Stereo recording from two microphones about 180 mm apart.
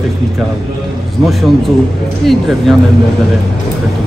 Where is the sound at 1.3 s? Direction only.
Centre (ahead or behind).